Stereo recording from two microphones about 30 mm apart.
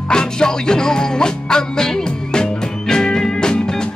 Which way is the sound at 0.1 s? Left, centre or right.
Left.